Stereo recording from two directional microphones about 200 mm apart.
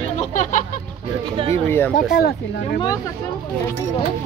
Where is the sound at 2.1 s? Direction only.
50° left (ahead or behind).